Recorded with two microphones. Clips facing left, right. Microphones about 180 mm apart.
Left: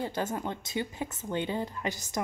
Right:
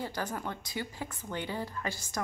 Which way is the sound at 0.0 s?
25° left (ahead or behind).